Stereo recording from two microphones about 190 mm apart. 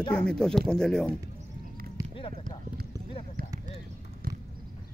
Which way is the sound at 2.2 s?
25° left (ahead or behind).